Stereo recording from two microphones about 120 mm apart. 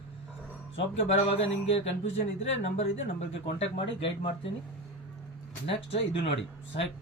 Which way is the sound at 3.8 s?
50° left (ahead or behind).